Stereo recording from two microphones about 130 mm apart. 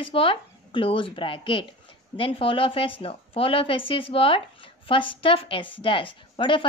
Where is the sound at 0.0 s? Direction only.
45° left (ahead or behind).